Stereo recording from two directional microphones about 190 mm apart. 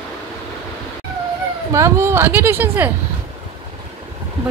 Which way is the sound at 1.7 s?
15° right (ahead or behind).